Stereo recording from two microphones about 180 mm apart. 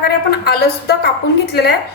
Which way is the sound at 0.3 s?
60° left (ahead or behind).